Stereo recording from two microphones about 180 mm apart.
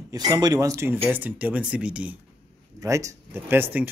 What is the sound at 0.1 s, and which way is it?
Speech, 20° right (ahead or behind).